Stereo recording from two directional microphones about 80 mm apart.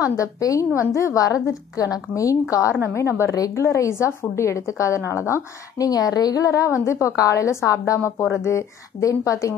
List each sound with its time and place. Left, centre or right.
0.0 s a woman's voice: left
5.9 s a woman's voice: left